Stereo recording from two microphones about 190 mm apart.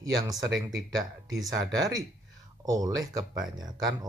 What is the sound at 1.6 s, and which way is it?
Speech, 20° right (ahead or behind).